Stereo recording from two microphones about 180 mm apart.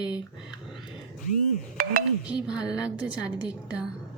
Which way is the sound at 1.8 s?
50° right (ahead or behind).